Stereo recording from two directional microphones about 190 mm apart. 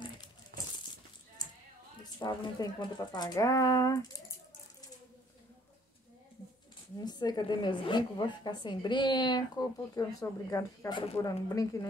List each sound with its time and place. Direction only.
2.1 s speech: 20° left (ahead or behind)
7.0 s a woman's voice: 20° left (ahead or behind)